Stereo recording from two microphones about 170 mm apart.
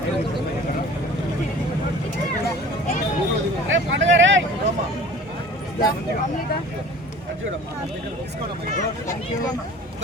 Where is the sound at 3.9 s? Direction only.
90° right.